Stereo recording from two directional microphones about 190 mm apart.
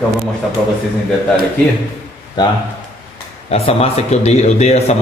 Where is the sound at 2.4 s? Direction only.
20° left (ahead or behind).